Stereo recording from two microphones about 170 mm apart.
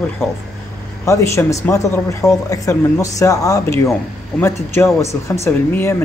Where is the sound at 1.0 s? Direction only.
15° left (ahead or behind).